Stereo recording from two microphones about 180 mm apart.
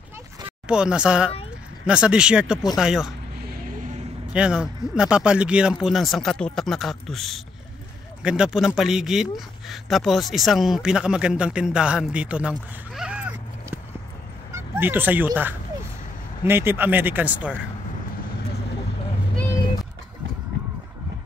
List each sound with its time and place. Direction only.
0.7 s speech: 5° right (ahead or behind)
3.4 s vehicle: 55° right (ahead or behind)
4.3 s speech: 5° right (ahead or behind)
14.5 s a sound: 10° right (ahead or behind)
16.4 s speech: 10° right (ahead or behind)